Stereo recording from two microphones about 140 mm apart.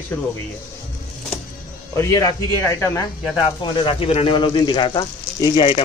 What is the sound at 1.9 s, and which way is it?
A man's voice, 25° left (ahead or behind).